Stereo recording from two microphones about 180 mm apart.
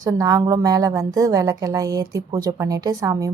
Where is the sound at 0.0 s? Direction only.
20° right (ahead or behind).